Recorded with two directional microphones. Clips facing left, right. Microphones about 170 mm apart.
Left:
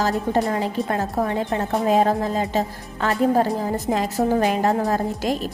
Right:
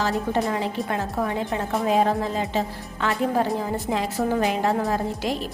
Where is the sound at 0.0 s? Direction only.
40° left (ahead or behind).